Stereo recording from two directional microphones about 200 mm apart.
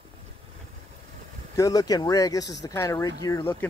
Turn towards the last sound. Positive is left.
turn(degrees=15)  # may be behind; listen again after turning